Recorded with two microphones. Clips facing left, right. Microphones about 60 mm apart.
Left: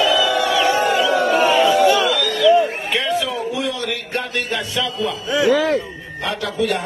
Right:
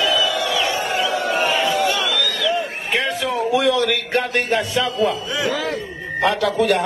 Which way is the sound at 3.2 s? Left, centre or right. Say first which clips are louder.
Right 5 dB; right.